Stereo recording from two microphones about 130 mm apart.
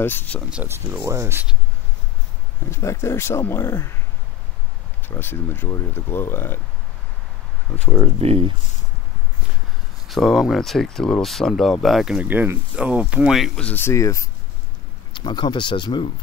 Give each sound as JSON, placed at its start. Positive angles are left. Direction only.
{"t": 0.0, "sound": "speech", "side_deg": 15}
{"t": 0.7, "sound": "speech", "side_deg": -20}
{"t": 2.6, "sound": "speech", "side_deg": 20}
{"t": 5.0, "sound": "speech", "side_deg": 15}
{"t": 8.2, "sound": "speech", "side_deg": -50}
{"t": 10.0, "sound": "speech", "side_deg": 0}
{"t": 13.6, "sound": "speech", "side_deg": 15}
{"t": 15.1, "sound": "speech", "side_deg": 35}